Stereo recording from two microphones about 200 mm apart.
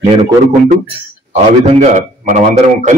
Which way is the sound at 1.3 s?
30° right (ahead or behind).